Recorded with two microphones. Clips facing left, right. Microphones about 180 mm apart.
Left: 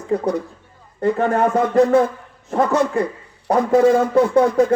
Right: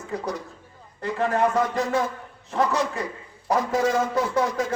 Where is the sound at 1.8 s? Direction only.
55° left (ahead or behind).